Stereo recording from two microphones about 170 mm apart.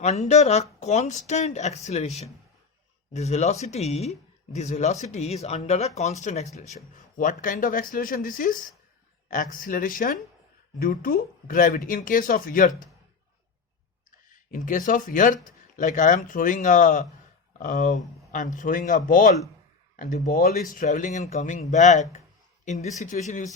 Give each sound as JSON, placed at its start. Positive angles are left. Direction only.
{"t": 0.0, "sound": "speech", "side_deg": 40}
{"t": 14.3, "sound": "speech", "side_deg": 50}